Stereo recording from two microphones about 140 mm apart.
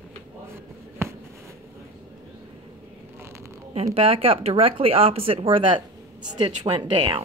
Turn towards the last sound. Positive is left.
turn(degrees=-35)  # may be behind; listen again after turning